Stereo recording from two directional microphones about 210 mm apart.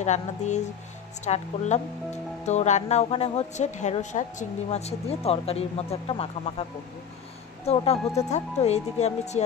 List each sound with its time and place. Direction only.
0.0 s speech: 35° left (ahead or behind)
7.6 s speech: 30° left (ahead or behind)